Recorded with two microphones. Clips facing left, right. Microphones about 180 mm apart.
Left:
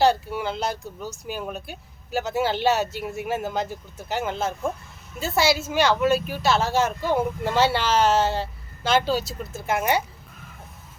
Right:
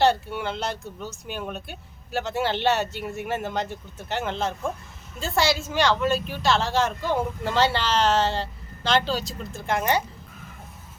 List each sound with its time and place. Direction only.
0.0 s speech: centre (ahead or behind)